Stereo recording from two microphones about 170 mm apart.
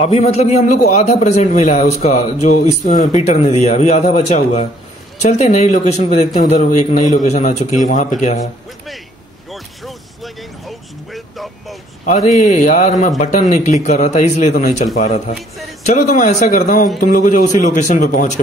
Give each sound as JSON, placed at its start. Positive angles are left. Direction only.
{"t": 0.0, "sound": "a man's voice", "side_deg": 40}
{"t": 9.5, "sound": "creak", "side_deg": 0}
{"t": 11.1, "sound": "vehicle", "side_deg": 0}
{"t": 12.1, "sound": "a man's voice", "side_deg": 45}